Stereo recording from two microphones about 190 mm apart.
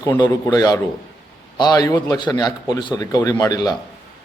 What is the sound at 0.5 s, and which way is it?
A man's voice, 20° left (ahead or behind).